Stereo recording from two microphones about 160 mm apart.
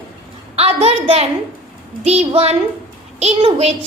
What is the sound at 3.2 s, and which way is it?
Speech, 40° right (ahead or behind).